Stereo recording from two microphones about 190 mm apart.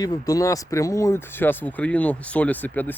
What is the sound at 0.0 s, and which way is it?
Speech, 20° left (ahead or behind).